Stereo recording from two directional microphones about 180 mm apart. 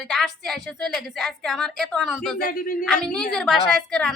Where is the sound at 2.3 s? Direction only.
50° left (ahead or behind).